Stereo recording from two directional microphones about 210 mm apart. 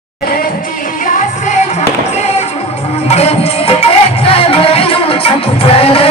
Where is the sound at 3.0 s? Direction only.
30° left (ahead or behind).